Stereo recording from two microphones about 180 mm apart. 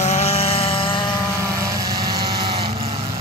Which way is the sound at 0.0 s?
40° left (ahead or behind).